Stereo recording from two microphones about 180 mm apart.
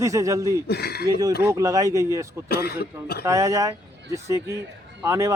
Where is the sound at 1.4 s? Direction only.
15° right (ahead or behind).